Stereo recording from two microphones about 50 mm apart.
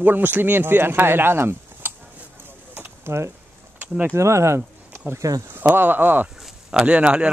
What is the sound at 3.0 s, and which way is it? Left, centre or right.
Speech, right.